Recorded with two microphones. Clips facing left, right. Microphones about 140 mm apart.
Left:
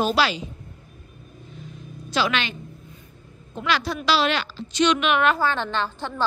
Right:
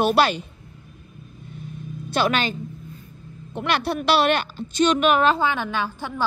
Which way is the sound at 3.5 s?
60° right (ahead or behind).